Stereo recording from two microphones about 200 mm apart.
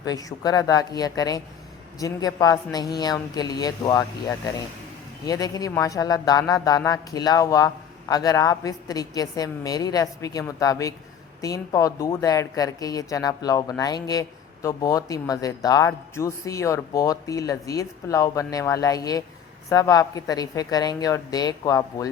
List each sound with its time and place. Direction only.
0.0 s speech: 20° left (ahead or behind)
5.2 s speech: 20° left (ahead or behind)